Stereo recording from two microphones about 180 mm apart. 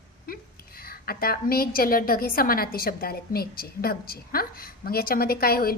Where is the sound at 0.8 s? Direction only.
55° left (ahead or behind).